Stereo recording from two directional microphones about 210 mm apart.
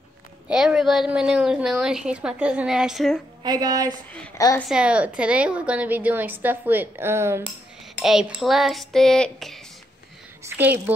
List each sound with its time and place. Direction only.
0.5 s a woman's voice: 5° right (ahead or behind)
3.4 s a woman's voice: 20° right (ahead or behind)
4.4 s a woman's voice: 15° left (ahead or behind)
4.6 s a woman's voice: 5° right (ahead or behind)
8.0 s a woman's voice: centre (ahead or behind)
10.4 s a woman's voice: 10° right (ahead or behind)